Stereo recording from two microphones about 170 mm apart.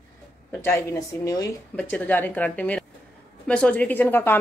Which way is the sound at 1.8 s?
10° left (ahead or behind).